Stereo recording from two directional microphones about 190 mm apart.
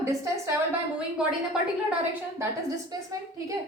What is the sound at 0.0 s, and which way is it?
Speech, 15° right (ahead or behind).